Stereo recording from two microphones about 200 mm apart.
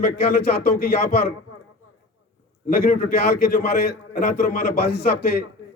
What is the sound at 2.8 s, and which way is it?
A man's voice, 50° left (ahead or behind).